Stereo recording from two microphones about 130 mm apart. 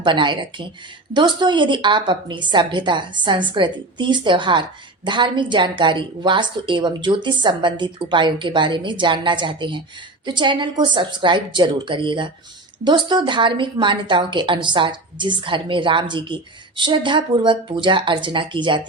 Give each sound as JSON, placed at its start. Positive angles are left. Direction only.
{"t": 0.0, "sound": "a woman's voice", "side_deg": -40}